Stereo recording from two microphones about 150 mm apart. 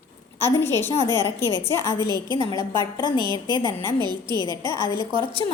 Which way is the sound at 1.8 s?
30° right (ahead or behind).